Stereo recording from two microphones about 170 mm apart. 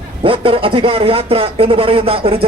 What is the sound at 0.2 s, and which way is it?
A man's voice, 30° right (ahead or behind).